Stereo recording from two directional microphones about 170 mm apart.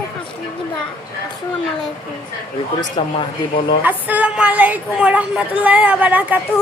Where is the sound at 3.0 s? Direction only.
30° left (ahead or behind).